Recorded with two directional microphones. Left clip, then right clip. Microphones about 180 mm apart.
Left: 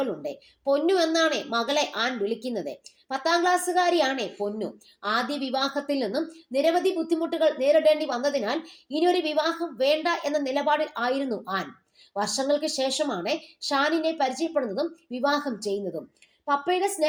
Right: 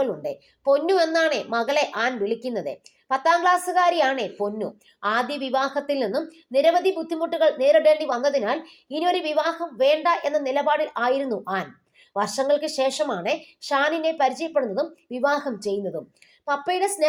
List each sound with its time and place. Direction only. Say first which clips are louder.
0.0 s a woman's voice: right 4 dB; 20° right (ahead or behind)